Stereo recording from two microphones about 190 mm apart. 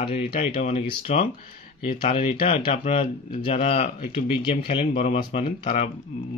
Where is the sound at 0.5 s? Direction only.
35° left (ahead or behind).